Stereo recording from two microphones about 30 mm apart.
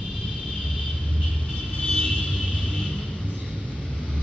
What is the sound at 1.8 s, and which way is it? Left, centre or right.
Vehicle, centre.